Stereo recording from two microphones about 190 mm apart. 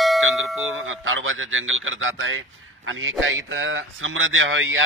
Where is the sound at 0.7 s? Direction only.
90° right.